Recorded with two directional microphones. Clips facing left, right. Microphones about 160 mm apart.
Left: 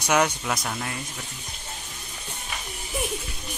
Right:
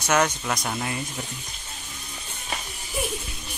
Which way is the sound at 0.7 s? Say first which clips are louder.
Right 3 dB; 10° right (ahead or behind).